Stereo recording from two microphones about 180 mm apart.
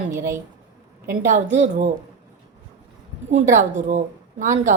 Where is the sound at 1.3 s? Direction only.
40° right (ahead or behind).